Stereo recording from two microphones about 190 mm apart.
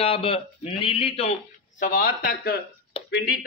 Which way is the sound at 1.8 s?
45° left (ahead or behind).